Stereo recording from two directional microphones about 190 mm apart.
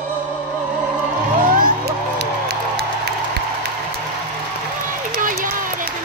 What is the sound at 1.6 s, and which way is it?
Crowd, 50° right (ahead or behind).